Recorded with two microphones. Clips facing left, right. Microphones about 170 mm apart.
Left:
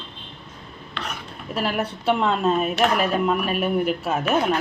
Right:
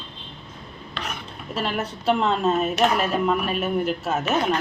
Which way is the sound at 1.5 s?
5° left (ahead or behind).